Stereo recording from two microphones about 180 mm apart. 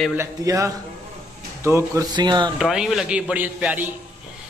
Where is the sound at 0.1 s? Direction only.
15° right (ahead or behind).